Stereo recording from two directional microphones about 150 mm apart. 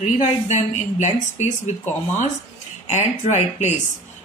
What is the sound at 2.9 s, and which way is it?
Speech, 50° left (ahead or behind).